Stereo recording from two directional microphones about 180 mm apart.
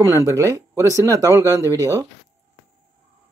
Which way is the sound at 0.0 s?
15° right (ahead or behind).